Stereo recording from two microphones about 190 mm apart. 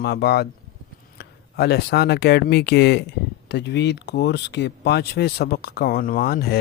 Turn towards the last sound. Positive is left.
turn(degrees=55)  # may be behind; listen again after turning